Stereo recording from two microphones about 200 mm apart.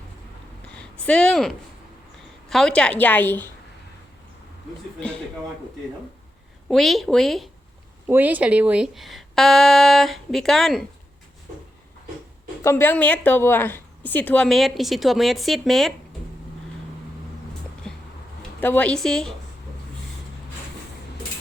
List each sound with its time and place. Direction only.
1.0 s a woman's voice: 5° left (ahead or behind)
4.9 s a man's voice: 5° left (ahead or behind)
6.7 s a woman's voice: centre (ahead or behind)
12.6 s a woman's voice: 10° left (ahead or behind)
17.9 s a sound: centre (ahead or behind)
18.6 s a woman's voice: 10° left (ahead or behind)